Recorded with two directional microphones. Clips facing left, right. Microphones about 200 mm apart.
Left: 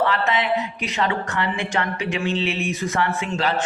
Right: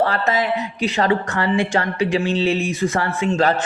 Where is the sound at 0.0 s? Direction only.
40° right (ahead or behind).